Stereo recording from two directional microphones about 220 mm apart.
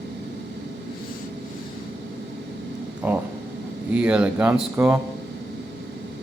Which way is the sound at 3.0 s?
10° right (ahead or behind).